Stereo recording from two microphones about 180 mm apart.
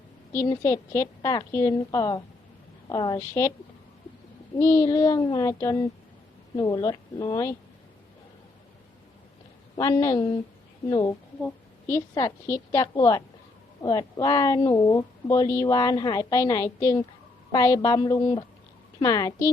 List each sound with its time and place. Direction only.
0.3 s a woman's voice: 20° left (ahead or behind)
4.5 s a woman's voice: 15° left (ahead or behind)
9.7 s a woman's voice: 20° left (ahead or behind)